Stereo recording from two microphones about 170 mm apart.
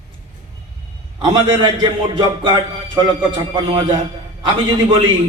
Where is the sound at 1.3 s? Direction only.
30° right (ahead or behind).